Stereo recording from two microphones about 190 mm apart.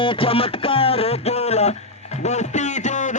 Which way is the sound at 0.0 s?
30° left (ahead or behind).